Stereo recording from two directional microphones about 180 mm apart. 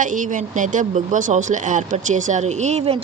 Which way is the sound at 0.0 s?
45° right (ahead or behind).